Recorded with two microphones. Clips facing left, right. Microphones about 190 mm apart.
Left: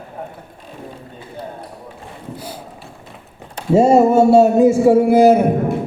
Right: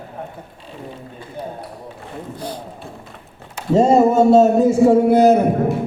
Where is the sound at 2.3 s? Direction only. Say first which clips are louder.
Right 4 dB; 10° left (ahead or behind).